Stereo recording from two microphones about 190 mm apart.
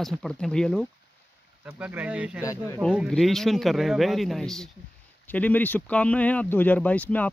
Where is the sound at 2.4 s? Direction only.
15° left (ahead or behind).